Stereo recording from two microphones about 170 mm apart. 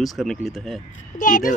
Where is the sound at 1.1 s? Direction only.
50° left (ahead or behind).